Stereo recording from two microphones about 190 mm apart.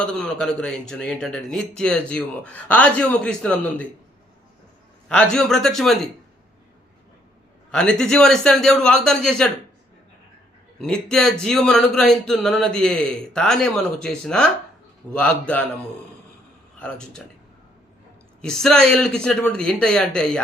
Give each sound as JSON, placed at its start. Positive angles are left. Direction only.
{"t": 0.0, "sound": "a man's voice", "side_deg": 5}
{"t": 5.0, "sound": "a man's voice", "side_deg": 5}
{"t": 7.7, "sound": "a man's voice", "side_deg": 5}
{"t": 10.8, "sound": "a man's voice", "side_deg": 5}
{"t": 16.7, "sound": "speech", "side_deg": 5}
{"t": 18.4, "sound": "a man's voice", "side_deg": 5}